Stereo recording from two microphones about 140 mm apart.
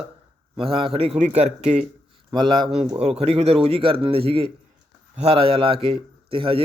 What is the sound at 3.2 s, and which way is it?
A man's voice, 45° right (ahead or behind).